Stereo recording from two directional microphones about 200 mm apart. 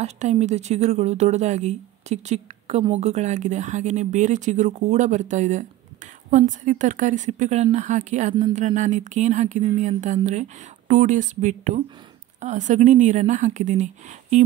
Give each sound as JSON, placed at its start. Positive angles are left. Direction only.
{"t": 0.0, "sound": "speech", "side_deg": -35}